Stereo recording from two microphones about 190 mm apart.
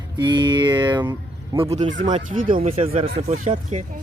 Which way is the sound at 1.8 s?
40° right (ahead or behind).